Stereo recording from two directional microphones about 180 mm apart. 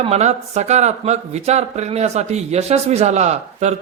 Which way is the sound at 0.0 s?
35° right (ahead or behind).